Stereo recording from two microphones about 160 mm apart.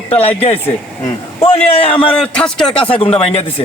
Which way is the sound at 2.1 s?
5° left (ahead or behind).